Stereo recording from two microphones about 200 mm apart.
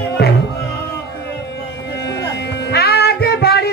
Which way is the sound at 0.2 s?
50° left (ahead or behind).